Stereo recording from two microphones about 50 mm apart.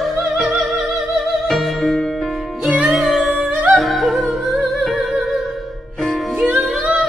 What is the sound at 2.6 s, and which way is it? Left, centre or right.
Music, right.